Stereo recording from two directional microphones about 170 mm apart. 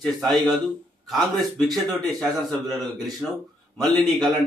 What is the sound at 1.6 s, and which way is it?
Speech, 20° right (ahead or behind).